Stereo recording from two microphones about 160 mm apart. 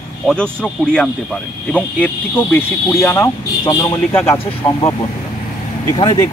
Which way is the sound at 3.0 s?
20° left (ahead or behind).